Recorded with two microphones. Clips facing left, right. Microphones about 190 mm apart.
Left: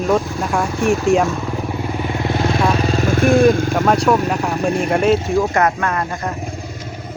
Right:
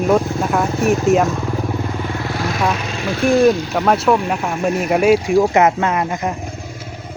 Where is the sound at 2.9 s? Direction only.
45° left (ahead or behind).